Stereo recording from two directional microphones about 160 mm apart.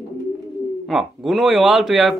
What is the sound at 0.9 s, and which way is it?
Speech, centre (ahead or behind).